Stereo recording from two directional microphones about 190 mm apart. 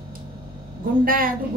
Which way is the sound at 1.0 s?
50° right (ahead or behind).